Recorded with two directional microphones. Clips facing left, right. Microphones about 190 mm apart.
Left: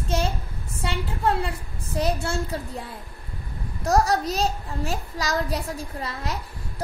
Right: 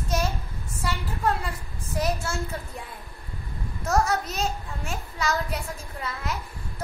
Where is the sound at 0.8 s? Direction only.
30° left (ahead or behind).